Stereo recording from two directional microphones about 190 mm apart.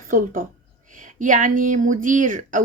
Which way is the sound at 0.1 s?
45° right (ahead or behind).